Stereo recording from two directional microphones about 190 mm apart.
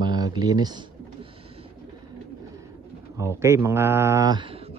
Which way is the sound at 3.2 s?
15° right (ahead or behind).